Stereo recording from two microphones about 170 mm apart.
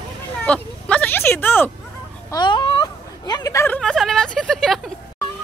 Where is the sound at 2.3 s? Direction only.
25° left (ahead or behind).